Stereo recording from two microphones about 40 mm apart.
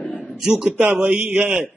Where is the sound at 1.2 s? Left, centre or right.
Right.